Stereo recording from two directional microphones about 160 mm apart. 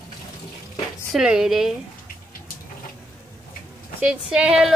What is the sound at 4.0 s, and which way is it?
Speech, 5° right (ahead or behind).